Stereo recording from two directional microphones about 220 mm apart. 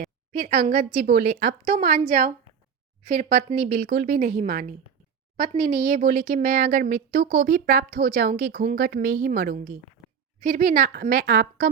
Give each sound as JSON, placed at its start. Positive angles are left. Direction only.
{"t": 0.0, "sound": "a woman's voice", "side_deg": -40}